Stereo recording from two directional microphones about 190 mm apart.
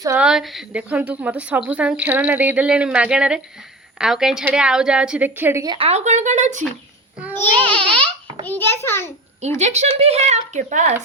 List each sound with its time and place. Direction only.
0.2 s a woman's voice: 5° right (ahead or behind)
5.7 s speech: 30° right (ahead or behind)
7.3 s a child's voice: 10° left (ahead or behind)
9.6 s speech: 35° right (ahead or behind)